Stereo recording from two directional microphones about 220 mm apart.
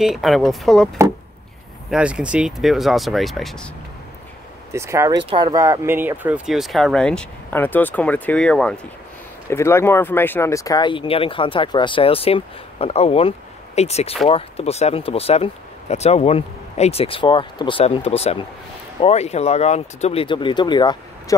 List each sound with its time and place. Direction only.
0.0 s speech: centre (ahead or behind)
1.9 s speech: 5° right (ahead or behind)
4.7 s speech: 10° right (ahead or behind); by 21.4 s 20° left (ahead or behind)